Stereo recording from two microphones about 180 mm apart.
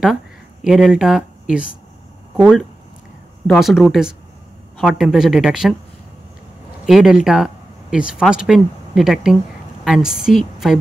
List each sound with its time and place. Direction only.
0.7 s a woman's voice: centre (ahead or behind)
6.9 s a woman's voice: centre (ahead or behind)